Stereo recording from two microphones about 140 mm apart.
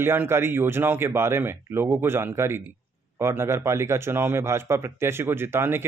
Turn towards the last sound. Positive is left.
turn(degrees=-15)  # may be behind; listen again after turning